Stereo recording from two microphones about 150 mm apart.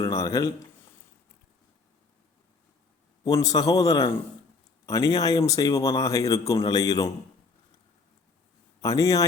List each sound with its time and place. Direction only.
0.0 s speech: 20° left (ahead or behind)
3.2 s speech: 25° left (ahead or behind)
8.8 s speech: 20° left (ahead or behind)